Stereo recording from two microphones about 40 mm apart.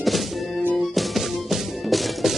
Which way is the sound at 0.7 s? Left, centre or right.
Centre.